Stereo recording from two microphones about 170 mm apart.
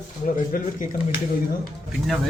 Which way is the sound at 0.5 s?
55° left (ahead or behind).